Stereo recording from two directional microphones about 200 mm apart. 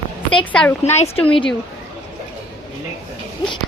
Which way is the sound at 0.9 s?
30° left (ahead or behind).